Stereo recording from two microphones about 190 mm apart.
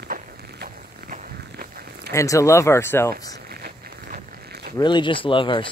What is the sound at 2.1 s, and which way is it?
Speech, 15° left (ahead or behind).